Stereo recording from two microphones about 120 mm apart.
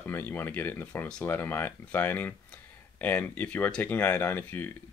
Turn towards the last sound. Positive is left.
turn(degrees=15)  # may be behind; listen again after turning